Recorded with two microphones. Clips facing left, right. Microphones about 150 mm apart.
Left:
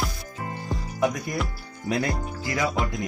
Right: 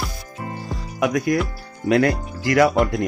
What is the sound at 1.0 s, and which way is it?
Speech, 85° right.